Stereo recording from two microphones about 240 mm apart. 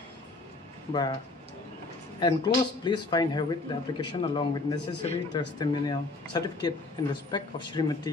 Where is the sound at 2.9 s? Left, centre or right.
Centre.